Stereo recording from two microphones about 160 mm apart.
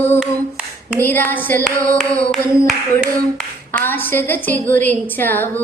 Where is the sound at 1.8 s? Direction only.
55° right (ahead or behind).